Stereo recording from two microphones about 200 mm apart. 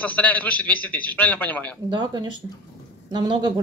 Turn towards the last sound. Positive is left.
turn(degrees=-25)  # may be behind; listen again after turning